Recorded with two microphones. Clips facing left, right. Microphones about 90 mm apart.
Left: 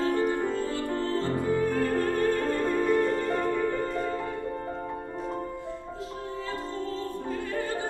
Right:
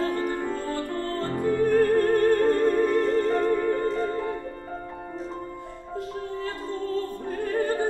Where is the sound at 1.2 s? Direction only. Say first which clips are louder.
Right 5 dB; 50° right (ahead or behind).